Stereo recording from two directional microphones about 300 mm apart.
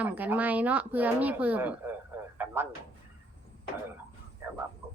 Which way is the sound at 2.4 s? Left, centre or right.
Centre.